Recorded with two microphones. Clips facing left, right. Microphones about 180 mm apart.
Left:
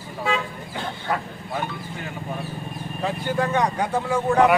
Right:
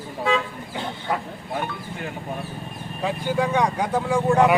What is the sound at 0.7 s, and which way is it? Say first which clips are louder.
Speech: even; 15° right (ahead or behind).